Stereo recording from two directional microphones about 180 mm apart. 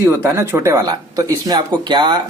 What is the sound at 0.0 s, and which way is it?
Speech, 15° right (ahead or behind).